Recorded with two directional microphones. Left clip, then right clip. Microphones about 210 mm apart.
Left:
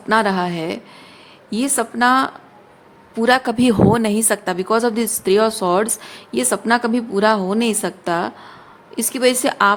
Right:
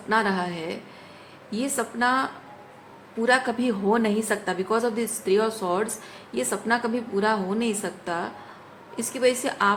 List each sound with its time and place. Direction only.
0.1 s a woman's voice: 55° left (ahead or behind)